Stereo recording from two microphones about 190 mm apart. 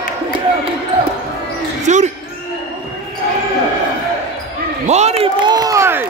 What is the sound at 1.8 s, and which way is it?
Basketball bounce, 40° right (ahead or behind).